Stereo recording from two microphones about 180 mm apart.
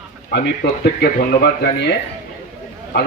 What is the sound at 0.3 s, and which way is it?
Speech, 60° left (ahead or behind).